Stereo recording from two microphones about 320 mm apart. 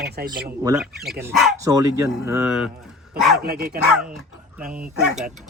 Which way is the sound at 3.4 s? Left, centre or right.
Right.